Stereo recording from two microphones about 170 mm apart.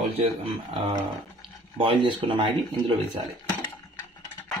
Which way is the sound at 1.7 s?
30° right (ahead or behind).